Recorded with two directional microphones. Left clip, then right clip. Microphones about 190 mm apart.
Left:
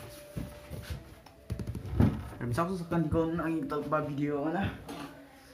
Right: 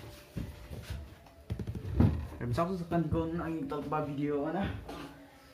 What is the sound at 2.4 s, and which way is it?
Speech, 5° left (ahead or behind).